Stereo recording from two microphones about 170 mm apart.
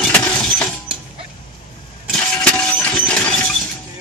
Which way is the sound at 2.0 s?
5° left (ahead or behind).